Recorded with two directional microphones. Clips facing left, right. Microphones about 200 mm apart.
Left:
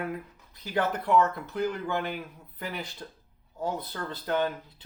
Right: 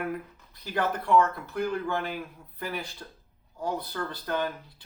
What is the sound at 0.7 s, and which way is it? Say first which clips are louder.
Speech: right 1 dB; 20° left (ahead or behind).